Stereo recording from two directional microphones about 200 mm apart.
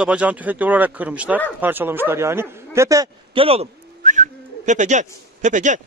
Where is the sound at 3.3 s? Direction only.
30° right (ahead or behind).